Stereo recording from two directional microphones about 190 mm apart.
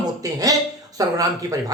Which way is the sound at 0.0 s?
20° right (ahead or behind).